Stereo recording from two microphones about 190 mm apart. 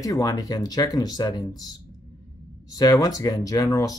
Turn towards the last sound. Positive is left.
turn(degrees=20)  # may be behind; listen again after turning